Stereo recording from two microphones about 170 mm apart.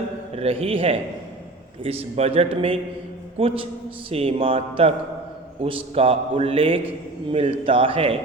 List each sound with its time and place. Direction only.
0.3 s a man's voice: 35° right (ahead or behind)
5.6 s a man's voice: 35° right (ahead or behind)